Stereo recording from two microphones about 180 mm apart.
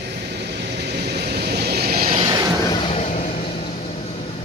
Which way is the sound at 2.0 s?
25° right (ahead or behind).